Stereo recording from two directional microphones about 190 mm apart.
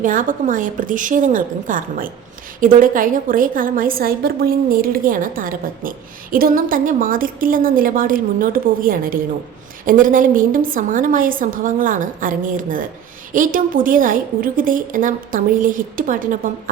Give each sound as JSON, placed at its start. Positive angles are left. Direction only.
{"t": 0.0, "sound": "a woman's voice", "side_deg": -45}